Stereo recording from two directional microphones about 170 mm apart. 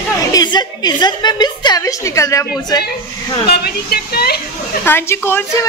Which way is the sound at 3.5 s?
65° left (ahead or behind).